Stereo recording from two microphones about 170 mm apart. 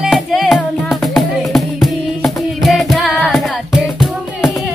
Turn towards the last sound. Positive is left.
turn(degrees=0)  # may be behind; listen again after turning